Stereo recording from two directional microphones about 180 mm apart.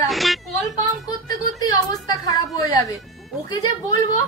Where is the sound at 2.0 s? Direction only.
20° left (ahead or behind).